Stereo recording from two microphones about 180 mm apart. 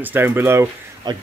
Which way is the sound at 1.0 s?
25° right (ahead or behind).